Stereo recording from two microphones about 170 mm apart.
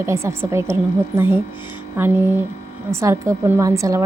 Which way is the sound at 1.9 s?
10° right (ahead or behind).